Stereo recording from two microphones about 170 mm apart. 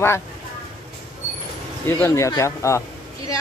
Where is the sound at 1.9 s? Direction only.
15° left (ahead or behind).